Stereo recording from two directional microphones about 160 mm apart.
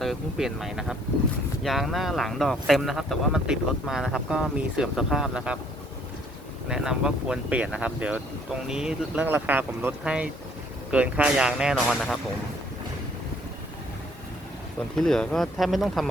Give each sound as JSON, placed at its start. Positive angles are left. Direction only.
{"t": 0.0, "sound": "speech", "side_deg": 0}
{"t": 6.7, "sound": "speech", "side_deg": -5}
{"t": 14.9, "sound": "speech", "side_deg": 5}